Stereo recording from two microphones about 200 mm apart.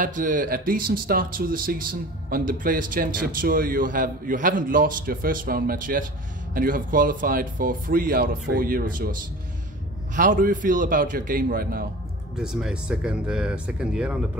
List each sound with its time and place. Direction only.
0.0 s speech: 40° right (ahead or behind)
10.1 s speech: 40° right (ahead or behind)
12.4 s speech: 5° right (ahead or behind)